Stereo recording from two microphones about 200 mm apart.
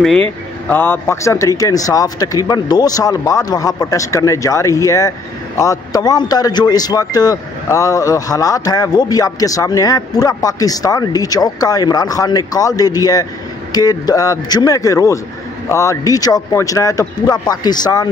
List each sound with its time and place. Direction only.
0.7 s speech: 10° left (ahead or behind)